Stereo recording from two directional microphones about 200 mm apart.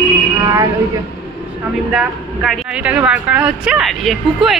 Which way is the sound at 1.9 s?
Centre (ahead or behind).